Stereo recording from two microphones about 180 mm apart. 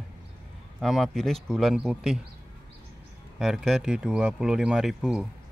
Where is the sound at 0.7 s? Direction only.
Centre (ahead or behind).